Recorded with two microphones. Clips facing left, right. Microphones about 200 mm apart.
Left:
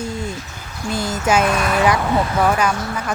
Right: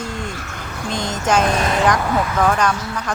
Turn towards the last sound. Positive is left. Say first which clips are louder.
# even
turn(degrees=5)  # may be behind; listen again after turning